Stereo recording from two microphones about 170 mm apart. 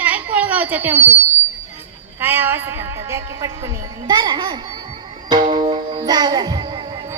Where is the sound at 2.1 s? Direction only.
10° right (ahead or behind).